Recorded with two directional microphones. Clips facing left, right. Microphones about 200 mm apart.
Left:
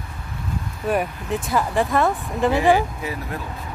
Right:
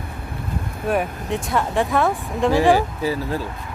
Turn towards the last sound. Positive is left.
turn(degrees=-30)  # may be behind; listen again after turning